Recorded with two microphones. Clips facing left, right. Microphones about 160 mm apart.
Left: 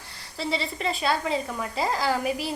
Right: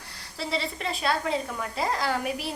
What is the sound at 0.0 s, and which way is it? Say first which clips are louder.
A woman's voice: left 3 dB; centre (ahead or behind).